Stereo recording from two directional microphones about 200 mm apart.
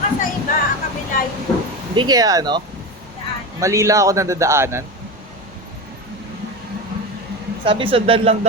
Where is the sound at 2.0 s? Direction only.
20° right (ahead or behind).